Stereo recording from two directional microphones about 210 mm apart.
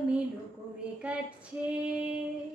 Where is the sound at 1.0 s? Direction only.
5° right (ahead or behind).